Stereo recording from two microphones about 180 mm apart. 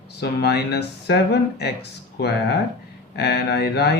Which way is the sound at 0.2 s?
65° left (ahead or behind).